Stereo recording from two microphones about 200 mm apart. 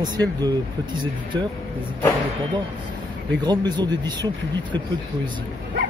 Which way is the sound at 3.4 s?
20° right (ahead or behind).